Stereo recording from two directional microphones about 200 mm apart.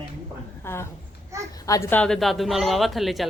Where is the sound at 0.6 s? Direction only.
10° left (ahead or behind).